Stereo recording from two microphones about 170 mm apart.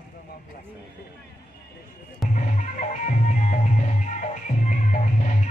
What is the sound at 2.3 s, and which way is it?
Music, 50° left (ahead or behind).